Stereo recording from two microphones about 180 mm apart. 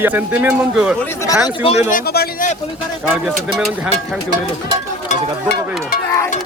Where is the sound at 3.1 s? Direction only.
5° right (ahead or behind).